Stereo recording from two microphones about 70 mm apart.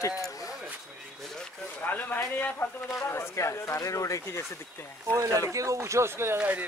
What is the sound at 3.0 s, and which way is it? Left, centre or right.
Speech, left.